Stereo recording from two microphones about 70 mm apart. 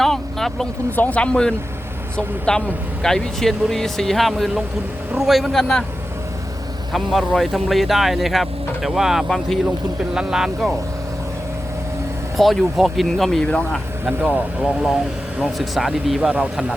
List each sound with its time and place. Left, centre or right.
0.0 s vehicle: centre
0.9 s speech: left
6.9 s speech: centre
12.4 s speech: centre
14.0 s speech: right
14.6 s speech: centre